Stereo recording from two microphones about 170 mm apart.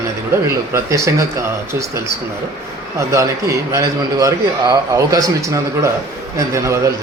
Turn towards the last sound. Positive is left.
turn(degrees=-20)  # may be behind; listen again after turning